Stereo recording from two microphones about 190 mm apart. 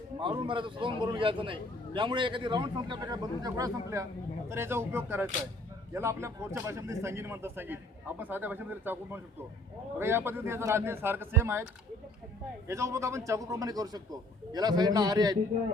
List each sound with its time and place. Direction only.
0.2 s a man's voice: 25° right (ahead or behind)
12.6 s a man's voice: 15° right (ahead or behind)